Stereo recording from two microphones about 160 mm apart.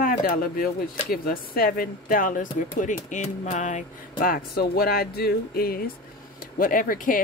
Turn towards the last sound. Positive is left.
turn(degrees=60)  # may be behind; listen again after turning